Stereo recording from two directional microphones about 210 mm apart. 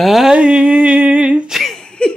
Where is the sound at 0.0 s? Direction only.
Centre (ahead or behind).